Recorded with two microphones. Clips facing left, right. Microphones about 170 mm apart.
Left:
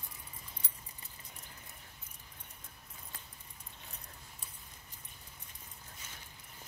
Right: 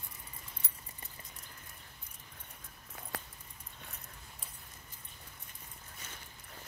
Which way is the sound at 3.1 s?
80° right.